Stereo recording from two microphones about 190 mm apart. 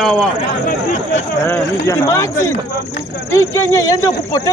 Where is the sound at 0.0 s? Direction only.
Centre (ahead or behind).